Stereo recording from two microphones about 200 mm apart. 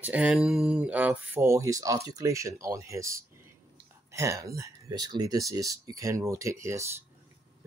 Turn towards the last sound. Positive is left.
turn(degrees=-15)  # may be behind; listen again after turning